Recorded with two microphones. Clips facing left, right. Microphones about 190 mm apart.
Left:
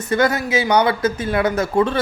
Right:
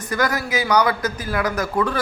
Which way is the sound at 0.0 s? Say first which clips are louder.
Left 5 dB; 25° left (ahead or behind).